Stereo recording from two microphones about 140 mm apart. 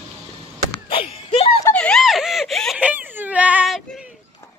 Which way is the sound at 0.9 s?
40° left (ahead or behind).